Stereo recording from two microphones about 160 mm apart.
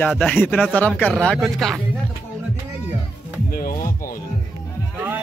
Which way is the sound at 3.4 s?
70° left (ahead or behind).